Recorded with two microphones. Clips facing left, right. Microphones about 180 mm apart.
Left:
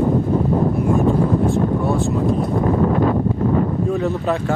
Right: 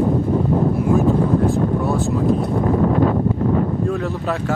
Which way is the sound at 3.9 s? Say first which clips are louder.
Left 3 dB; centre (ahead or behind).